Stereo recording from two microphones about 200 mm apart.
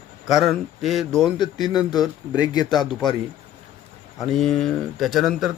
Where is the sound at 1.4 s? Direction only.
20° left (ahead or behind).